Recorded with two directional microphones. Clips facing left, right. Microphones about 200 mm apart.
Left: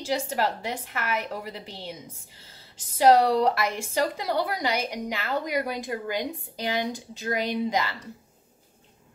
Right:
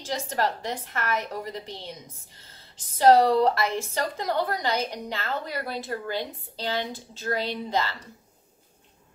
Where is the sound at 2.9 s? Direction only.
10° left (ahead or behind).